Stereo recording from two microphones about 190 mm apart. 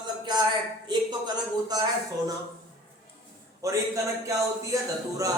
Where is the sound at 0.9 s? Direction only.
25° right (ahead or behind).